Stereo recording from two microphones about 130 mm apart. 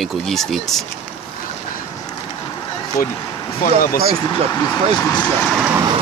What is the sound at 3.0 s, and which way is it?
Speech, 90° left.